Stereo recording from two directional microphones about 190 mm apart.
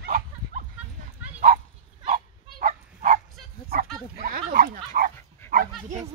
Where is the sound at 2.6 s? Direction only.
45° right (ahead or behind).